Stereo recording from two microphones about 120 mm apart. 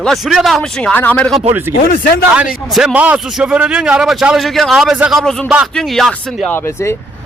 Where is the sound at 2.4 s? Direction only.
5° right (ahead or behind).